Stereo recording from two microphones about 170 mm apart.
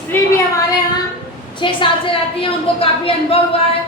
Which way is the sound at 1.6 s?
30° left (ahead or behind).